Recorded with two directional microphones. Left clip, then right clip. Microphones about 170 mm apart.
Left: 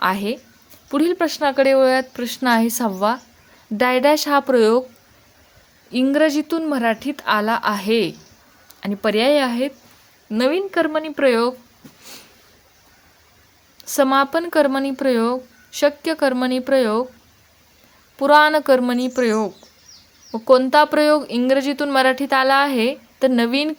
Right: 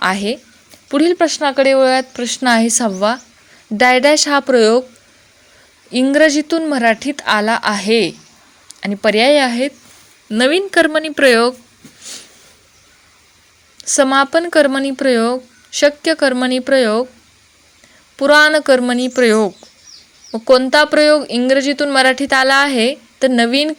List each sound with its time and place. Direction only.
0.0 s speech: 10° right (ahead or behind)
5.9 s speech: 20° right (ahead or behind)
13.7 s speech: 10° right (ahead or behind)
18.2 s speech: 15° right (ahead or behind)
20.5 s speech: 10° right (ahead or behind)